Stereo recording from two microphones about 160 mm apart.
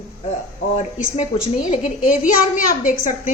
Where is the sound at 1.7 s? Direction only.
50° left (ahead or behind).